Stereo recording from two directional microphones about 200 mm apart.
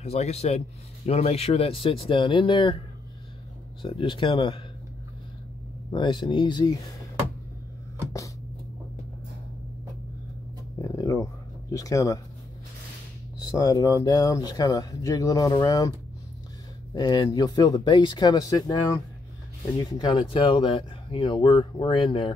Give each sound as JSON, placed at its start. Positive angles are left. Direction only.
{"t": 0.0, "sound": "speech", "side_deg": 35}
{"t": 3.8, "sound": "speech", "side_deg": 25}
{"t": 5.9, "sound": "speech", "side_deg": 25}
{"t": 10.8, "sound": "a sound", "side_deg": 15}
{"t": 11.7, "sound": "speech", "side_deg": 15}
{"t": 13.5, "sound": "speech", "side_deg": 20}
{"t": 16.9, "sound": "speech", "side_deg": 20}